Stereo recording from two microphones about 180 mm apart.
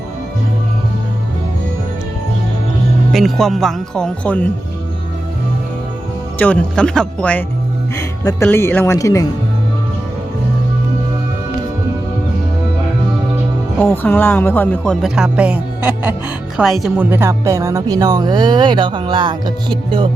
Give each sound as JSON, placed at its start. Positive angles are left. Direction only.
{"t": 3.1, "sound": "speech", "side_deg": 0}
{"t": 6.4, "sound": "speech", "side_deg": 5}
{"t": 13.9, "sound": "speech", "side_deg": 10}
{"t": 15.0, "sound": "speech", "side_deg": -5}
{"t": 17.1, "sound": "speech", "side_deg": -15}